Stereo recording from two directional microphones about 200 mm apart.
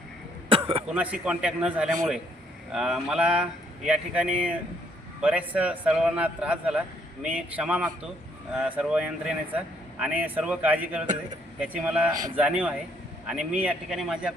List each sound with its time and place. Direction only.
0.4 s throat clearing: 25° right (ahead or behind)
0.9 s a man's voice: 5° right (ahead or behind)
12.1 s a man's voice: 15° right (ahead or behind)